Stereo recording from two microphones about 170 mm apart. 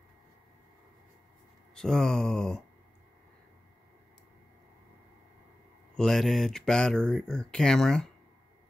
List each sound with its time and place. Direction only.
1.8 s speech: 5° left (ahead or behind)
5.9 s speech: centre (ahead or behind)